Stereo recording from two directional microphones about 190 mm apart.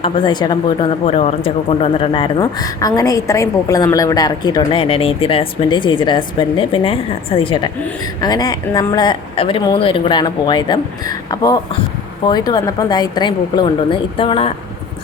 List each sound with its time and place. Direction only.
0.0 s speech: 25° left (ahead or behind)